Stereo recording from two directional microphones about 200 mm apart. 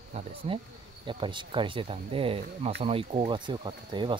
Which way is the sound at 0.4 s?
30° right (ahead or behind).